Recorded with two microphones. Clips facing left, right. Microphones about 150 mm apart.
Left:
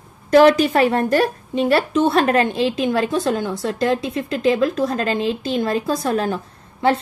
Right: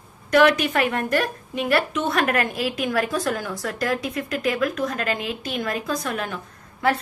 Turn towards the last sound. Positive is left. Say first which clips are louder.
# left 4 dB
turn(degrees=30)  # may be behind; listen again after turning